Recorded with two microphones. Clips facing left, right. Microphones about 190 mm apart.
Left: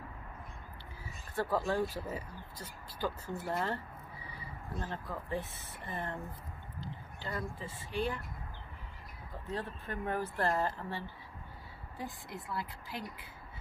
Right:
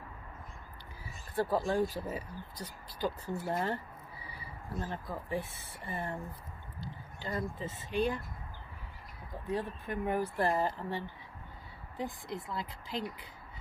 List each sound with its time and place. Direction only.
1.3 s speech: 15° right (ahead or behind)
9.3 s speech: 15° right (ahead or behind)